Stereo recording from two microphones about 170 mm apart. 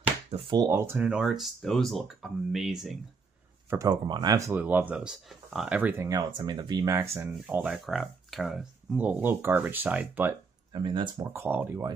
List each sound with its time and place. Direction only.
0.3 s speech: 25° right (ahead or behind)
0.7 s speech: 15° right (ahead or behind)
3.7 s speech: 20° right (ahead or behind)
10.7 s speech: 25° right (ahead or behind)
11.3 s speech: 10° right (ahead or behind)